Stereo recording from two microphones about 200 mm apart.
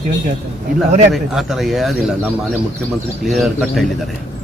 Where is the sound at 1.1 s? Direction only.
Centre (ahead or behind).